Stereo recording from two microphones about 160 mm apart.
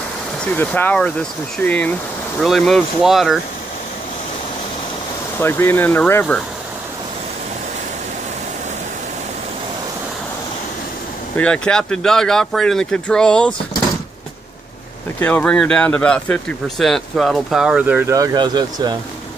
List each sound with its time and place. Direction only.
0.6 s speech: 10° left (ahead or behind)
5.4 s speech: 15° left (ahead or behind)
11.3 s speech: 5° left (ahead or behind)
15.1 s speech: 10° left (ahead or behind); by 18.9 s 25° right (ahead or behind)